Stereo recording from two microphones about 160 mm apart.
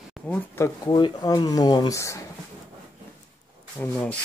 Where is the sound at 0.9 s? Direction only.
25° left (ahead or behind).